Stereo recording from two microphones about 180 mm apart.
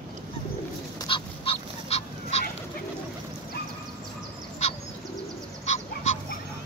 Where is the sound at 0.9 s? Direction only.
30° left (ahead or behind).